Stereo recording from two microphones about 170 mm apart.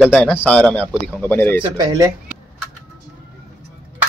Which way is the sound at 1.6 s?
25° right (ahead or behind).